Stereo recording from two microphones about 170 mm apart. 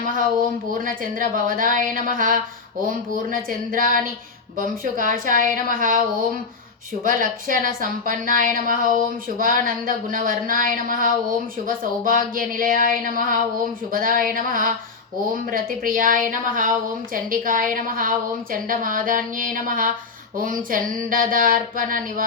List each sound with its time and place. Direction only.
0.7 s speech: 55° right (ahead or behind)
3.7 s speech: 55° right (ahead or behind)
7.0 s speech: 50° right (ahead or behind)